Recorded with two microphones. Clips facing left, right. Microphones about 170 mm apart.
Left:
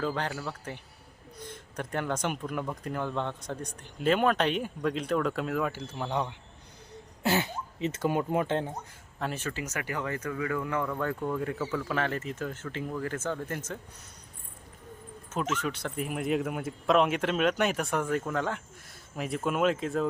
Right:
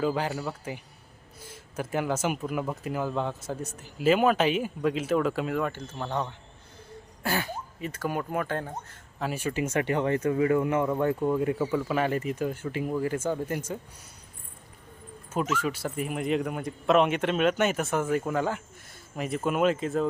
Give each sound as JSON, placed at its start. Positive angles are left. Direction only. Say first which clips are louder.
{"t": 0.0, "sound": "speech", "louder": "right 4 dB", "side_deg": -10}
{"t": 9.1, "sound": "speech", "louder": "right 4 dB", "side_deg": -5}
{"t": 9.6, "sound": "speech", "louder": "right 11 dB", "side_deg": -30}
{"t": 15.6, "sound": "speech", "louder": "right 3 dB", "side_deg": -5}